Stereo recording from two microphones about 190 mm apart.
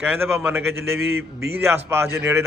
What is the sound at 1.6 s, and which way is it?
Speech, 15° right (ahead or behind).